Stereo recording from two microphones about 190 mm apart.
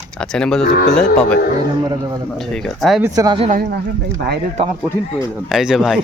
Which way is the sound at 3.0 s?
20° right (ahead or behind).